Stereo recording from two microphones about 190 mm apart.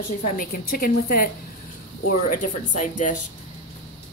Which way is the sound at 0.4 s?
50° left (ahead or behind).